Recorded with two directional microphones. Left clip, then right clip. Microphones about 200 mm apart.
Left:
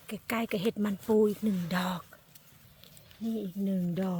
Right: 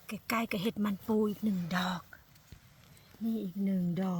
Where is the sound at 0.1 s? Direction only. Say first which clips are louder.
Left 1 dB; 30° left (ahead or behind).